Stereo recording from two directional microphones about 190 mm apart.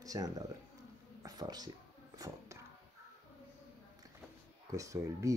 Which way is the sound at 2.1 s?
15° right (ahead or behind).